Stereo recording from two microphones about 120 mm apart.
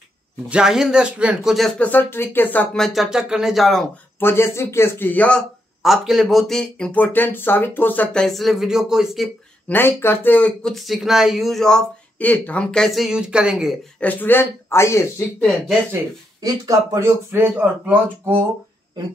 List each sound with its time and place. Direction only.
0.5 s speech: 5° right (ahead or behind)
1.8 s speech: 15° left (ahead or behind); by 3.8 s centre (ahead or behind)
4.2 s speech: 20° left (ahead or behind)
5.8 s speech: centre (ahead or behind)
9.7 s speech: 20° left (ahead or behind)
10.7 s speech: centre (ahead or behind)
13.9 s speech: 15° left (ahead or behind)
16.3 s speech: 25° right (ahead or behind)